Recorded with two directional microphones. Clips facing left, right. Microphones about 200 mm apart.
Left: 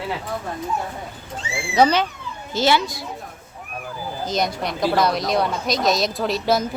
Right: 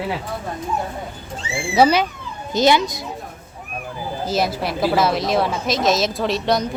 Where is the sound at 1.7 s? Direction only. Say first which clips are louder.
Right 2 dB; 10° right (ahead or behind).